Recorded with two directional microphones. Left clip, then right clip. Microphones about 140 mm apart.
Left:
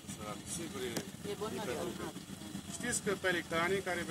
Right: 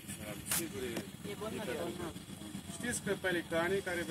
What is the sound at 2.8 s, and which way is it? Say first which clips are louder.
Speech: left 1 dB; 65° left (ahead or behind).